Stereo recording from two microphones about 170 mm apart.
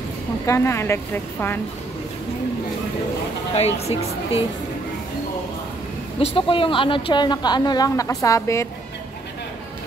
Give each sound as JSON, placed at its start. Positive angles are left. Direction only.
{"t": 0.5, "sound": "a woman's voice", "side_deg": 15}
{"t": 3.5, "sound": "speech", "side_deg": 40}
{"t": 6.1, "sound": "a woman's voice", "side_deg": 30}